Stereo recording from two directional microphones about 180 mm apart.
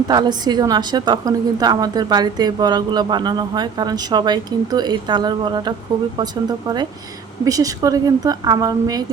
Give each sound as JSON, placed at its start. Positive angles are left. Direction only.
{"t": 0.1, "sound": "a woman's voice", "side_deg": -25}
{"t": 7.4, "sound": "a woman's voice", "side_deg": -20}